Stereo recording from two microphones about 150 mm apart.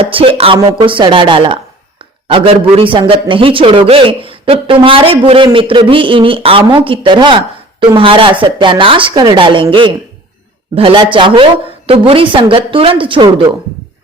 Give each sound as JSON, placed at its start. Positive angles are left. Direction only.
{"t": 0.0, "sound": "speech", "side_deg": -40}